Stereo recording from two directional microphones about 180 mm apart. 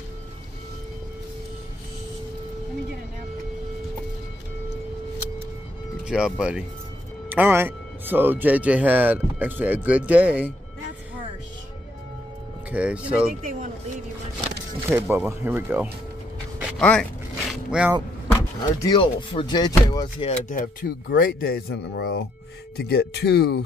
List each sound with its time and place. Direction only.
6.0 s speech: 5° right (ahead or behind)
12.7 s speech: 5° right (ahead or behind)
13.4 s speech: 50° right (ahead or behind)
14.9 s speech: 10° right (ahead or behind)
16.7 s speech: 5° left (ahead or behind)
17.5 s a sound: 5° right (ahead or behind)
18.8 s speech: 25° left (ahead or behind)
20.2 s speech: 45° left (ahead or behind); by 23.6 s 65° left (ahead or behind)